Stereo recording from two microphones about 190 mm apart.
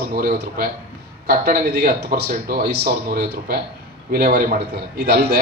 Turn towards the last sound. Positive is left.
turn(degrees=-55)  # may be behind; listen again after turning